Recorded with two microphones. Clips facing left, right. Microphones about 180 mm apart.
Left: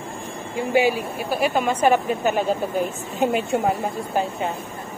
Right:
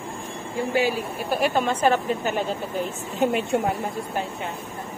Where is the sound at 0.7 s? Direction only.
15° left (ahead or behind).